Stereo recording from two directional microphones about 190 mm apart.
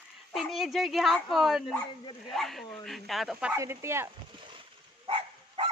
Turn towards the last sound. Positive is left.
turn(degrees=-30)  # may be behind; listen again after turning